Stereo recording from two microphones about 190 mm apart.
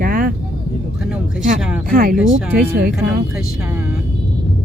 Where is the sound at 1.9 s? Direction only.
45° right (ahead or behind).